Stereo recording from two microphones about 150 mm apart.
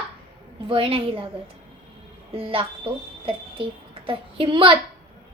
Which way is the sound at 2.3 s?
40° right (ahead or behind).